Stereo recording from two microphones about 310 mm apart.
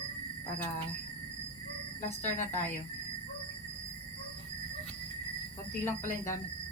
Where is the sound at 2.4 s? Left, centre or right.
Left.